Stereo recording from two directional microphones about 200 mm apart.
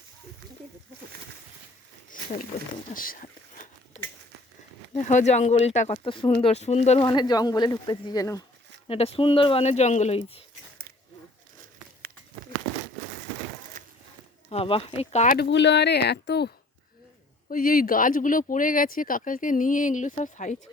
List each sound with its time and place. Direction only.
2.9 s a sound: 45° left (ahead or behind)
4.9 s speech: 35° left (ahead or behind)
7.0 s speech: 20° left (ahead or behind)
8.9 s speech: 30° left (ahead or behind)
13.8 s a sound: 40° right (ahead or behind)
14.5 s speech: 30° left (ahead or behind)
15.4 s speech: 60° left (ahead or behind)
17.5 s speech: 45° left (ahead or behind)